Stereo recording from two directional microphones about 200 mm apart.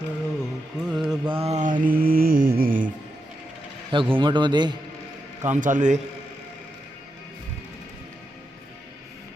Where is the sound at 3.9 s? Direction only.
25° right (ahead or behind).